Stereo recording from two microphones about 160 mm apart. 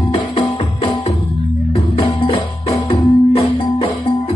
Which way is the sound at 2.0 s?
40° left (ahead or behind).